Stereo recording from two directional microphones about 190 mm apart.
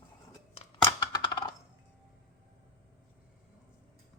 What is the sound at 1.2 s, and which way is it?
Coin, 25° left (ahead or behind).